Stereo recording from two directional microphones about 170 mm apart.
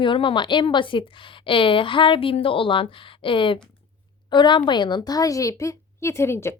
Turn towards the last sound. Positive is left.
turn(degrees=15)  # may be behind; listen again after turning